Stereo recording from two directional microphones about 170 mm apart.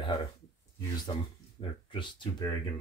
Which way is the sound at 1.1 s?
30° left (ahead or behind).